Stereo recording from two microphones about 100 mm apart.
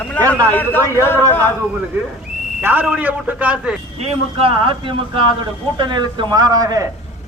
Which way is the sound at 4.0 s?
80° right.